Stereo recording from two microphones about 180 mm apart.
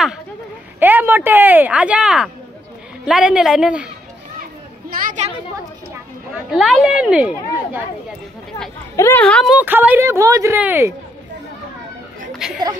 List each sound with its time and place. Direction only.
0.7 s speech: 10° right (ahead or behind)
4.8 s a woman's voice: 40° right (ahead or behind)
6.5 s speech: centre (ahead or behind)
8.9 s speech: 10° left (ahead or behind)
9.6 s speech: 10° right (ahead or behind)
12.4 s speech: centre (ahead or behind)